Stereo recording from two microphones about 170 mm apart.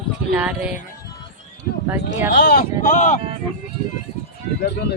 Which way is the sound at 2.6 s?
50° left (ahead or behind).